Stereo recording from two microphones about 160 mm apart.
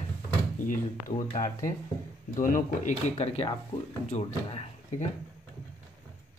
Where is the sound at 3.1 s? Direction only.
40° left (ahead or behind).